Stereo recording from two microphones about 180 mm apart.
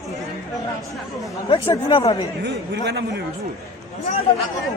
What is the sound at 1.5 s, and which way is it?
Speech, 25° left (ahead or behind).